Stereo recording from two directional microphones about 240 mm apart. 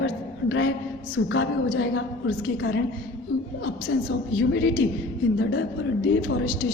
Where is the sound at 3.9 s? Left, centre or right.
Left.